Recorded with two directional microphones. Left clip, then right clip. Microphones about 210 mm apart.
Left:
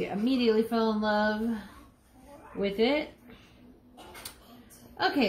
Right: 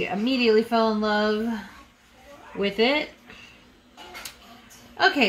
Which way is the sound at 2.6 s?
30° right (ahead or behind).